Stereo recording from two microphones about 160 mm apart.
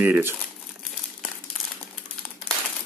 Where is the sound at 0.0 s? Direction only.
15° right (ahead or behind).